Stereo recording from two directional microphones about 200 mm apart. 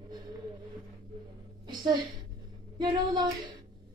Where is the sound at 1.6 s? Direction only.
20° right (ahead or behind).